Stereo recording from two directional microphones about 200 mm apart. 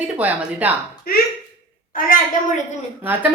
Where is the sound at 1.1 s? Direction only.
50° left (ahead or behind).